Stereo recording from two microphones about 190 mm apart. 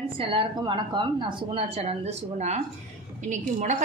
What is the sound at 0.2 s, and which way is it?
A woman's voice, 25° right (ahead or behind).